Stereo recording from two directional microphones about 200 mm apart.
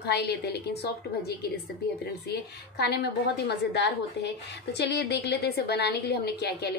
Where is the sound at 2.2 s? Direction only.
55° left (ahead or behind).